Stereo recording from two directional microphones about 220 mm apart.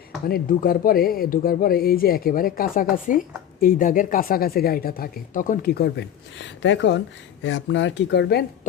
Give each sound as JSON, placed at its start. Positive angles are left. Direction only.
{"t": 0.3, "sound": "speech", "side_deg": 40}